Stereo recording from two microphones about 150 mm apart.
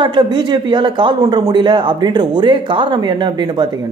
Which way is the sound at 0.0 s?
30° right (ahead or behind).